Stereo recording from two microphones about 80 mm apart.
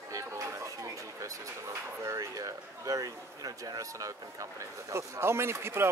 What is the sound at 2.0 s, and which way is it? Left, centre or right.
Speech, right.